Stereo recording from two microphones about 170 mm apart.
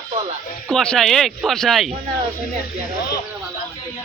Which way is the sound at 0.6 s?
5° left (ahead or behind).